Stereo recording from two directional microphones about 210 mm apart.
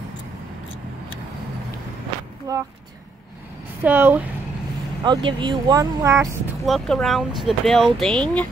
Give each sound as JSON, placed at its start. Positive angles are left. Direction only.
{"t": 2.5, "sound": "speech", "side_deg": -15}
{"t": 3.8, "sound": "speech", "side_deg": -10}
{"t": 5.0, "sound": "speech", "side_deg": -20}
{"t": 6.6, "sound": "speech", "side_deg": 0}